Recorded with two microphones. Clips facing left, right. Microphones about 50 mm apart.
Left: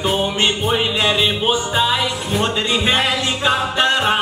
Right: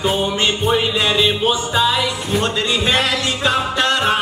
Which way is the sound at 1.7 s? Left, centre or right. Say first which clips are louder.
Right 1 dB; centre.